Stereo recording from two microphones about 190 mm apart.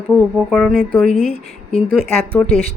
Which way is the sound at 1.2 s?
30° left (ahead or behind).